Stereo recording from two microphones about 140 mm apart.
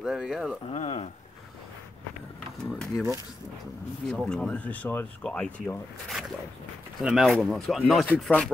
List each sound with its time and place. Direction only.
0.0 s speech: 5° right (ahead or behind)
0.7 s speech: 45° left (ahead or behind)
2.7 s speech: centre (ahead or behind)
4.1 s speech: 5° left (ahead or behind)